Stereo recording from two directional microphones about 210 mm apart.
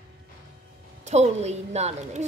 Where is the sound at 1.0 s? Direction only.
30° right (ahead or behind).